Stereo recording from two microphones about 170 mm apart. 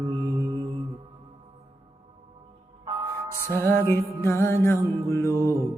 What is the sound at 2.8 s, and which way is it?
Music, 30° right (ahead or behind).